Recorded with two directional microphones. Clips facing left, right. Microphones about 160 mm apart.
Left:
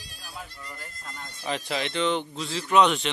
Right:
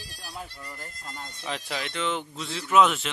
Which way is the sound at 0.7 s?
15° right (ahead or behind).